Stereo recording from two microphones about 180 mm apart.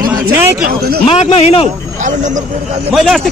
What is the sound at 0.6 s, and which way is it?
Speech, 60° right (ahead or behind).